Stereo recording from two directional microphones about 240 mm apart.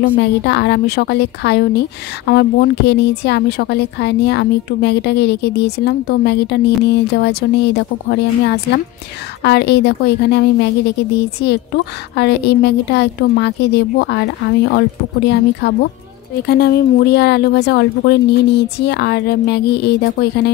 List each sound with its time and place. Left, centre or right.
0.0 s a woman's voice: left